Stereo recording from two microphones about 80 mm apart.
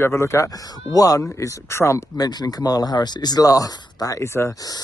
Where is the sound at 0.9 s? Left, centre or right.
Left.